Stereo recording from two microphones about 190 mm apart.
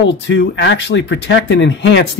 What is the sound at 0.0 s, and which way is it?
Speech, 65° left (ahead or behind).